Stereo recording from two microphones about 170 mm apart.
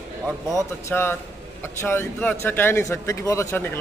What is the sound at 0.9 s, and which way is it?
Speech, 15° left (ahead or behind).